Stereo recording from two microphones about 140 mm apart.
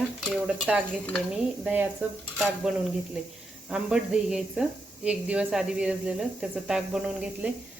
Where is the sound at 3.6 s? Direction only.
5° right (ahead or behind).